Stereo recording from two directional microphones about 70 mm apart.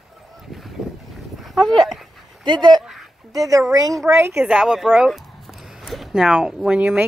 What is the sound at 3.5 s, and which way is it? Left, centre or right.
Speech, right.